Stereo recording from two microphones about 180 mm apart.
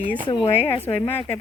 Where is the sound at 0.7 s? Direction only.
10° left (ahead or behind).